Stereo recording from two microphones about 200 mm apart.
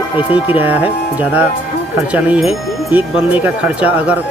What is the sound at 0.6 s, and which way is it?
Speech, 10° right (ahead or behind).